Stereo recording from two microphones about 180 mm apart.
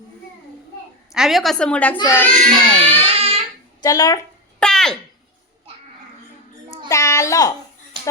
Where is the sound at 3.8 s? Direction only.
20° left (ahead or behind).